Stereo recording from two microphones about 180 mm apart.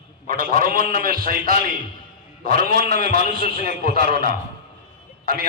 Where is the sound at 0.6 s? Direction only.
50° right (ahead or behind).